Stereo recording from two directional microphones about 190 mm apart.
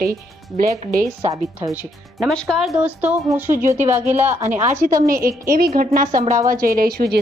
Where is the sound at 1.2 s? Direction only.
15° right (ahead or behind).